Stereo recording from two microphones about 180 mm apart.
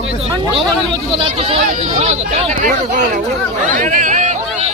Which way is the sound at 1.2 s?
35° right (ahead or behind).